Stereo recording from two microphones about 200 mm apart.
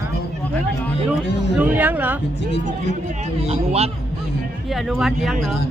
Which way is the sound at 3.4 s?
30° right (ahead or behind).